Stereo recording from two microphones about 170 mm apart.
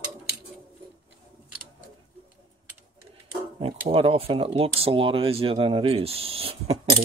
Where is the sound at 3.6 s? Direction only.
35° right (ahead or behind).